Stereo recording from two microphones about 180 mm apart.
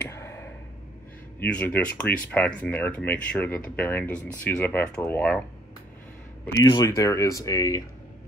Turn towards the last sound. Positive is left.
turn(degrees=20)  # may be behind; listen again after turning